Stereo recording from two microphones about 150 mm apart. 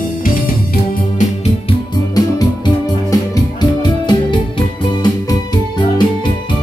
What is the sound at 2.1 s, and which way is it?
Music, 25° left (ahead or behind).